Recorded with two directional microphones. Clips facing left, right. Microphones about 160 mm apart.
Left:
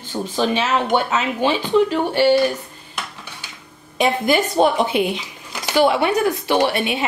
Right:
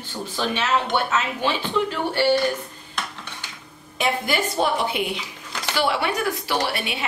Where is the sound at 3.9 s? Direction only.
20° left (ahead or behind).